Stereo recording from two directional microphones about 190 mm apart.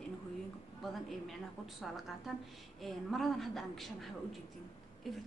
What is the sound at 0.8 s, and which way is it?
A woman's voice, centre (ahead or behind).